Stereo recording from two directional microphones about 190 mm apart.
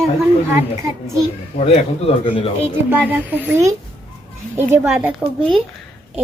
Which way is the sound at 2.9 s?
10° right (ahead or behind).